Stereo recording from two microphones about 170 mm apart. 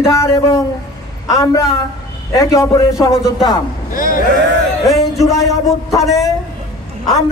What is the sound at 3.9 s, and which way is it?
Speech, 55° left (ahead or behind).